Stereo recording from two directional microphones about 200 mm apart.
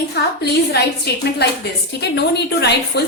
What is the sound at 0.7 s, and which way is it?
A woman's voice, 55° left (ahead or behind).